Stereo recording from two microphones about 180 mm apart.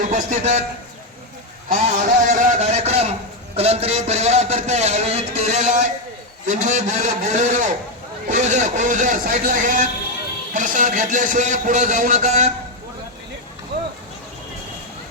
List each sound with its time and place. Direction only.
0.1 s a man's voice: 40° right (ahead or behind)
1.7 s a man's voice: 45° right (ahead or behind)